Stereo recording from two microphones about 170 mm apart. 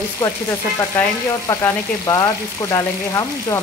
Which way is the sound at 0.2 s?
20° left (ahead or behind).